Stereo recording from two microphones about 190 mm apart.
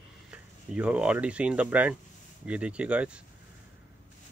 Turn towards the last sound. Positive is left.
turn(degrees=-5)  # may be behind; listen again after turning